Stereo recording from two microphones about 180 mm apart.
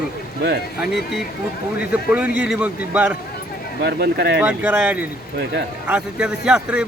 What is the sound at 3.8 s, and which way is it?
Speech, 60° right (ahead or behind).